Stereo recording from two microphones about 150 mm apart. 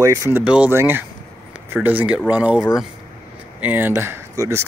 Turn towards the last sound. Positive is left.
turn(degrees=-20)  # may be behind; listen again after turning